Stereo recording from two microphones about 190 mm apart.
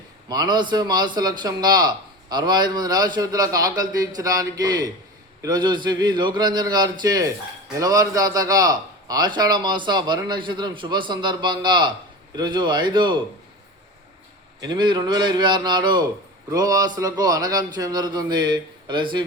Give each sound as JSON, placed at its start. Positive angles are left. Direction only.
{"t": 0.3, "sound": "a man's voice", "side_deg": -20}
{"t": 14.6, "sound": "a man's voice", "side_deg": -25}